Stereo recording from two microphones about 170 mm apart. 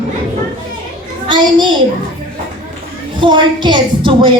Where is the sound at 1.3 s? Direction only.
25° right (ahead or behind).